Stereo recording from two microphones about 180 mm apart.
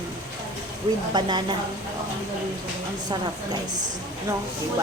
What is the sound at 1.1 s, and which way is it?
Speech, 25° right (ahead or behind).